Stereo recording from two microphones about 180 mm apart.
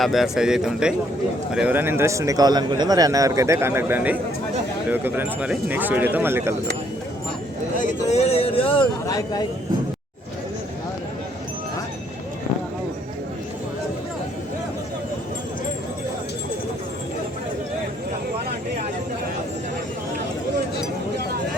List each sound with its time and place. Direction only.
0.0 s a man's voice: centre (ahead or behind)
7.8 s speech: 35° left (ahead or behind); by 9.4 s 20° left (ahead or behind)